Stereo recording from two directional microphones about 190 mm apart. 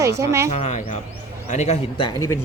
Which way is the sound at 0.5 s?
35° left (ahead or behind).